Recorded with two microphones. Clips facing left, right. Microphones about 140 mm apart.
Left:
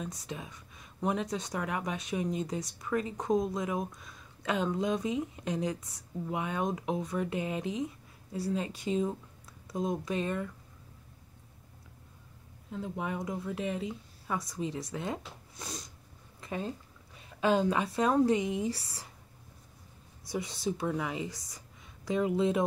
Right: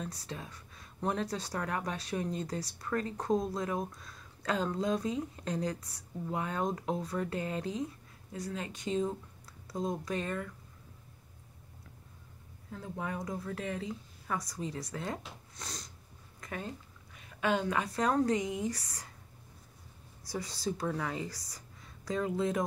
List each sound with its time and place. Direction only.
0.3 s speech: 15° left (ahead or behind)
1.4 s speech: centre (ahead or behind)
1.7 s speech: 15° left (ahead or behind)
5.8 s speech: centre (ahead or behind)
6.3 s speech: 10° left (ahead or behind)
8.3 s speech: 25° left (ahead or behind)
12.7 s speech: 15° left (ahead or behind)
16.3 s a sound: 25° left (ahead or behind)
17.4 s speech: 20° left (ahead or behind)
20.2 s speech: 20° left (ahead or behind)